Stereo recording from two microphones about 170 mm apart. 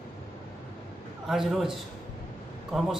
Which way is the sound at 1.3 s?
Centre (ahead or behind).